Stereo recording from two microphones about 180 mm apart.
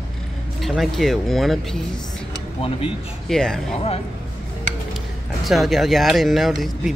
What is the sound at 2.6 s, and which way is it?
Speech, 30° left (ahead or behind).